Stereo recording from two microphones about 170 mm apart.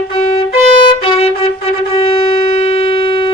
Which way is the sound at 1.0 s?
35° left (ahead or behind).